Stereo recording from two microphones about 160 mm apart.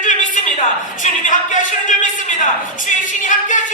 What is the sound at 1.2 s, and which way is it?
Speech, 50° left (ahead or behind).